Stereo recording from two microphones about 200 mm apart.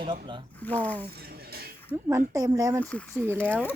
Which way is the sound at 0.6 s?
10° left (ahead or behind).